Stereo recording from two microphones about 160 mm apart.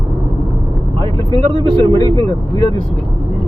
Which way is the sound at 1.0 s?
25° left (ahead or behind).